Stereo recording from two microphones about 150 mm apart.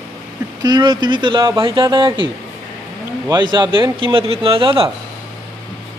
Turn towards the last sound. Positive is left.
turn(degrees=-35)  # may be behind; listen again after turning